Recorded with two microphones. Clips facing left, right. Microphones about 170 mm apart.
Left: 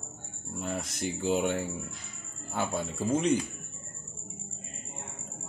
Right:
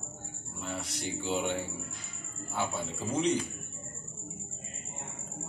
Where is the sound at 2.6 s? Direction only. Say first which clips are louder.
Left 3 dB; 50° left (ahead or behind).